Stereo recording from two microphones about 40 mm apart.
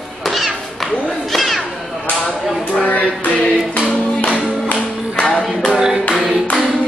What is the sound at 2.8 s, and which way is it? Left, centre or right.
Music, left.